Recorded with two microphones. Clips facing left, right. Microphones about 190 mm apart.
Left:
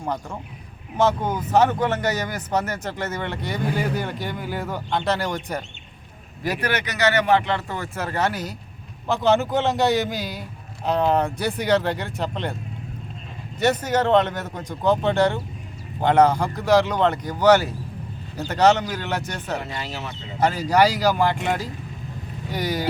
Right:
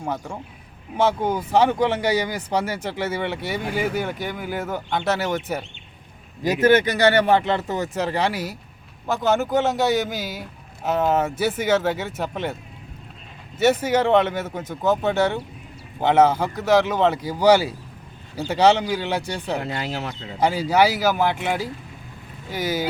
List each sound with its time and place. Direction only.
0.0 s speech: 5° right (ahead or behind)
6.4 s speech: 20° right (ahead or behind); by 12.5 s 5° right (ahead or behind)
13.6 s speech: 5° right (ahead or behind)
19.6 s speech: 65° right (ahead or behind)
20.4 s speech: 10° right (ahead or behind)